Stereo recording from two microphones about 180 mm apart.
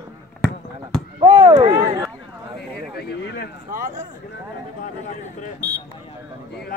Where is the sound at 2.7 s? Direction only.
65° left (ahead or behind).